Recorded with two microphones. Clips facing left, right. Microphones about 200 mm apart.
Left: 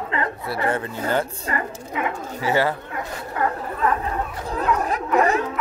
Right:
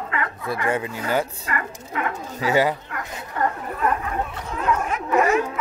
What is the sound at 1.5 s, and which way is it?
Dog, 30° left (ahead or behind).